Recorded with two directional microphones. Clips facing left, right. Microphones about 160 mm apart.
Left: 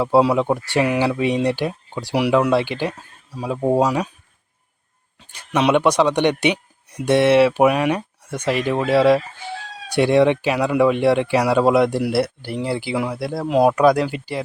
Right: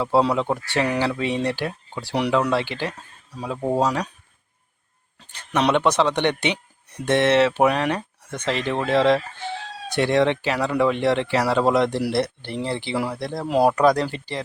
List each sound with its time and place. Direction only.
0.0 s speech: 10° left (ahead or behind)
3.8 s speech: 5° left (ahead or behind)
5.3 s speech: 5° left (ahead or behind)